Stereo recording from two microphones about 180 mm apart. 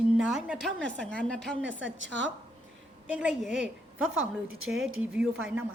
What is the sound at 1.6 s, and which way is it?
Speech, 90° right.